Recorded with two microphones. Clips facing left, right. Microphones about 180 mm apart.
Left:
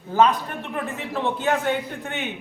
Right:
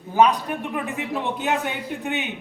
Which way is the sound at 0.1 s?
15° right (ahead or behind).